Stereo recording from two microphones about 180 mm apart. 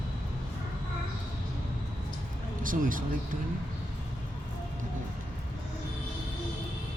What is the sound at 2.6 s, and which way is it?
Speech, 50° right (ahead or behind).